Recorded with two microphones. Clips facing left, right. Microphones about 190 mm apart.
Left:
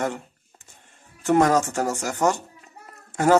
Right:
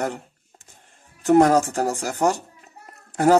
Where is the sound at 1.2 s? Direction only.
35° right (ahead or behind).